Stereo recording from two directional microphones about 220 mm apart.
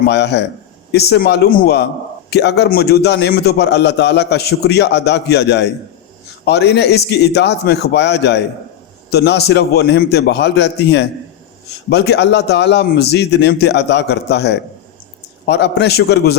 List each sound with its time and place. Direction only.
0.0 s a man's voice: 50° left (ahead or behind)